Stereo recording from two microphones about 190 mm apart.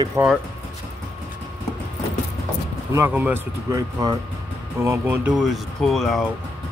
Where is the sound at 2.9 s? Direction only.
10° right (ahead or behind).